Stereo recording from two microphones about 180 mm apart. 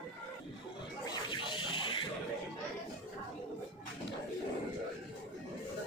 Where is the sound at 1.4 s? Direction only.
25° left (ahead or behind).